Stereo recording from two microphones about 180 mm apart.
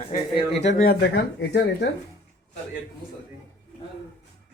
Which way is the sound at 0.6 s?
85° left.